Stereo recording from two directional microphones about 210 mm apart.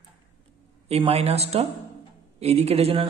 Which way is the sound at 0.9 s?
30° right (ahead or behind).